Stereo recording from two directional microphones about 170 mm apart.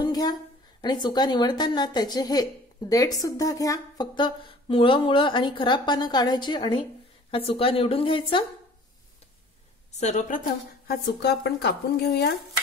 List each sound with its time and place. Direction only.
0.0 s a woman's voice: 25° left (ahead or behind)
9.9 s a woman's voice: 45° left (ahead or behind)
10.9 s speech: 70° left (ahead or behind)